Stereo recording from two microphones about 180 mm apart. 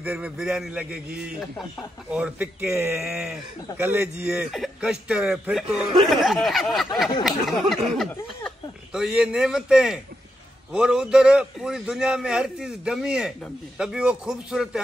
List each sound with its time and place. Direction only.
0.0 s a man's voice: 5° right (ahead or behind)